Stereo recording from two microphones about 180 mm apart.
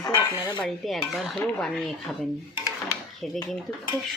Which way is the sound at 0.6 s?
Centre (ahead or behind).